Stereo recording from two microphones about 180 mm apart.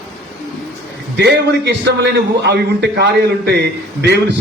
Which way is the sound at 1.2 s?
65° right (ahead or behind).